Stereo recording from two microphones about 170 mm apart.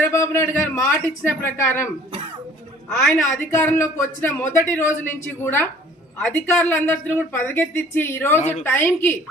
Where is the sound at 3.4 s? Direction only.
15° left (ahead or behind).